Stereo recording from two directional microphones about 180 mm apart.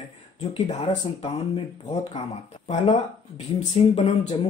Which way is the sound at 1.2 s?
35° left (ahead or behind).